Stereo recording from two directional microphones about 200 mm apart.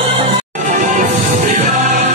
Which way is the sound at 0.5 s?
40° right (ahead or behind).